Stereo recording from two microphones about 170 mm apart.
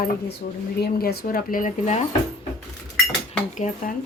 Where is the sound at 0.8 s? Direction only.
65° left (ahead or behind); by 2.5 s 40° left (ahead or behind).